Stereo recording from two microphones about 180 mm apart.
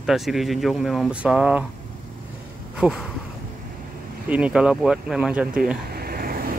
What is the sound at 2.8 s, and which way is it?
Speech, centre (ahead or behind).